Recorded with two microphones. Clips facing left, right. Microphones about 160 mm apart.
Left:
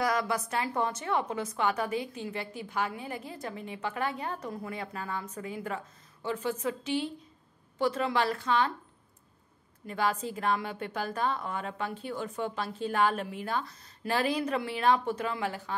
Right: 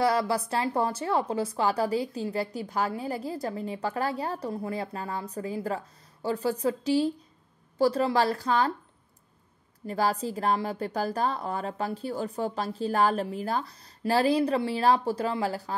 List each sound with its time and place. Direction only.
0.0 s a woman's voice: 30° right (ahead or behind)
9.8 s a woman's voice: 35° right (ahead or behind)